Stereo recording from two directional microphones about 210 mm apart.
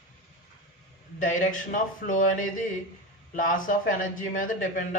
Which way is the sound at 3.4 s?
40° left (ahead or behind).